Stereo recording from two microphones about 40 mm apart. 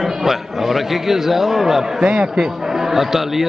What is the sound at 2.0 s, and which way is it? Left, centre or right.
Speech, right.